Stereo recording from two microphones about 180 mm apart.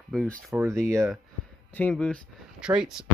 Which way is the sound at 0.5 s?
15° right (ahead or behind).